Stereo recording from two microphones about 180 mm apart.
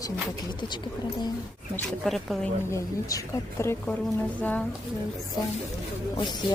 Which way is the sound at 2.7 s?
15° left (ahead or behind).